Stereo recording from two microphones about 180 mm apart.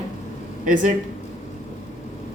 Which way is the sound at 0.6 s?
45° right (ahead or behind).